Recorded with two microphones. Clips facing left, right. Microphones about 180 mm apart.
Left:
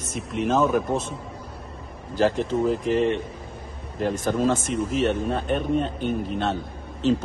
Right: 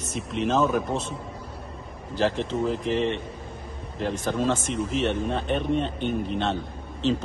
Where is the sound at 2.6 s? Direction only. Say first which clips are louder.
Left 3 dB; 45° left (ahead or behind).